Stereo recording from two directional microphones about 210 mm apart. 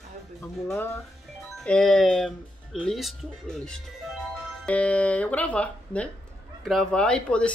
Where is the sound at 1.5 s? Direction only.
5° left (ahead or behind).